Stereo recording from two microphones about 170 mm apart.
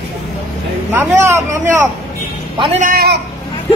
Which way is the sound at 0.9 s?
15° right (ahead or behind).